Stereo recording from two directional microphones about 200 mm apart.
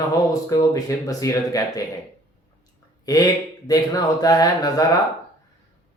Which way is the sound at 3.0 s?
20° left (ahead or behind).